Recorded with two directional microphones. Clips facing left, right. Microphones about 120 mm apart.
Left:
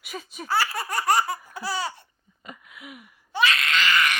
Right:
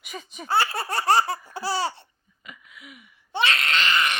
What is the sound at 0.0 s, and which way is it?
Speech, 5° left (ahead or behind).